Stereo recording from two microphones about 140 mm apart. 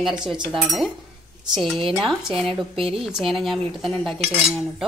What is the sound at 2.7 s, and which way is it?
Speech, 40° right (ahead or behind).